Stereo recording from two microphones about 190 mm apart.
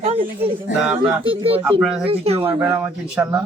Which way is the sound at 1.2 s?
30° right (ahead or behind).